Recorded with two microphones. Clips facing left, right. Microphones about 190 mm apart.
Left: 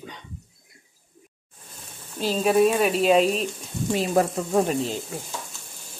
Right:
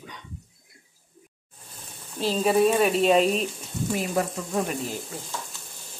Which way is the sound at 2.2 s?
Centre (ahead or behind).